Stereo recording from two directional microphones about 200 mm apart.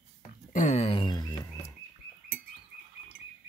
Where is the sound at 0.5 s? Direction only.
40° left (ahead or behind); by 1.8 s 15° left (ahead or behind).